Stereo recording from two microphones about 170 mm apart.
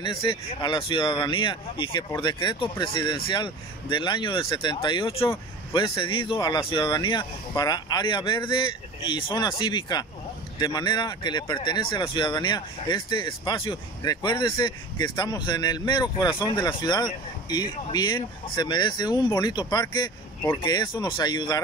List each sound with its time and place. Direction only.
0.0 s speech: 30° left (ahead or behind)